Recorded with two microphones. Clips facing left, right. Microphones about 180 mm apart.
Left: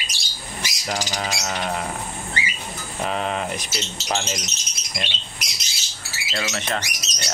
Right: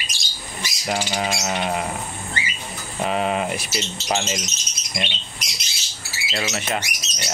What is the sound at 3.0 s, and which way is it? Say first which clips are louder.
Speech: right 3 dB; 5° right (ahead or behind).